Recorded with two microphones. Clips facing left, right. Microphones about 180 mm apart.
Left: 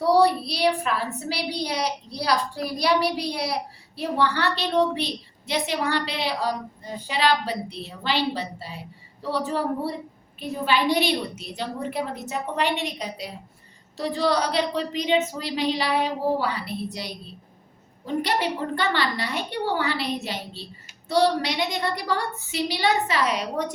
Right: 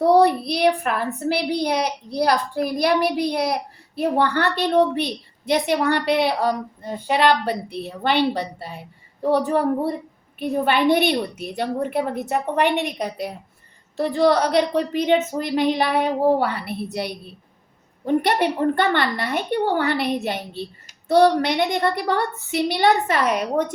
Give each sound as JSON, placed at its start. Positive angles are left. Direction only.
{"t": 0.0, "sound": "a woman's voice", "side_deg": -55}